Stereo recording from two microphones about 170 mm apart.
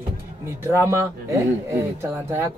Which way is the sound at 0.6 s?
15° right (ahead or behind).